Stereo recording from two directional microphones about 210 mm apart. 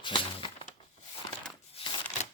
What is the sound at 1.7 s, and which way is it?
Shuffling cards, 25° left (ahead or behind).